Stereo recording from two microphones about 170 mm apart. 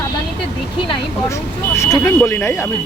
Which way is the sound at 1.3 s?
15° left (ahead or behind).